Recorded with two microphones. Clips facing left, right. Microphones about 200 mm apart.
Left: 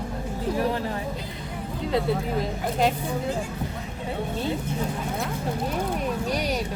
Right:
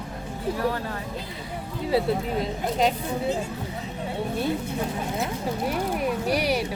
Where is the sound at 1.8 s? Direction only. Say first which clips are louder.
Right 1 dB; centre (ahead or behind).